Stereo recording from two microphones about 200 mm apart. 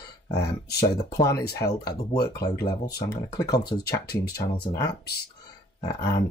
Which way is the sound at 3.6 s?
55° left (ahead or behind).